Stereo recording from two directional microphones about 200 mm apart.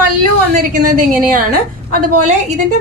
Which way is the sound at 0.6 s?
45° right (ahead or behind).